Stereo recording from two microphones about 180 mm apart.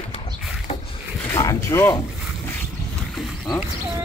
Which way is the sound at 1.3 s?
15° left (ahead or behind).